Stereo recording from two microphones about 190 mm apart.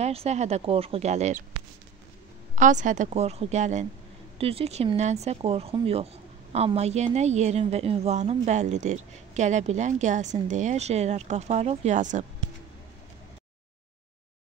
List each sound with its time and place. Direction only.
0.0 s a woman's voice: 35° right (ahead or behind)
2.5 s a woman's voice: 40° right (ahead or behind)